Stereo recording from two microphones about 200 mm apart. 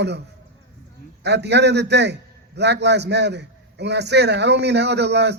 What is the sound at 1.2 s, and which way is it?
A man's voice, 60° right (ahead or behind).